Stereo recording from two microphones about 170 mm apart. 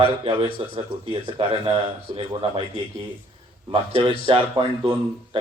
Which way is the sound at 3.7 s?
35° right (ahead or behind).